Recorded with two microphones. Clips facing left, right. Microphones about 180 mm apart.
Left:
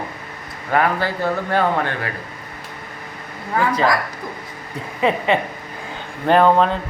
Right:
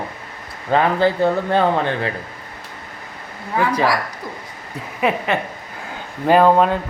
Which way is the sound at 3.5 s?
15° right (ahead or behind).